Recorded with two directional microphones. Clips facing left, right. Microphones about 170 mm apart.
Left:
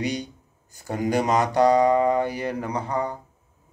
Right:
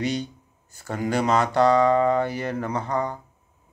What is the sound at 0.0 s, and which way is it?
Speech, 15° left (ahead or behind).